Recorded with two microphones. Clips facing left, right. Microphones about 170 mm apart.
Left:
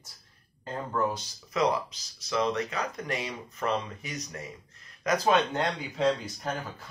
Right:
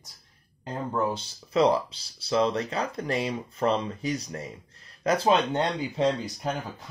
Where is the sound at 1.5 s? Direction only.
30° right (ahead or behind).